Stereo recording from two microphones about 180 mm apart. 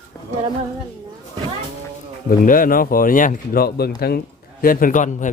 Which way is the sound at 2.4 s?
50° left (ahead or behind).